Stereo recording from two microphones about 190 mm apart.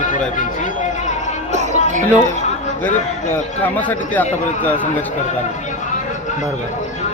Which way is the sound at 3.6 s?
10° left (ahead or behind).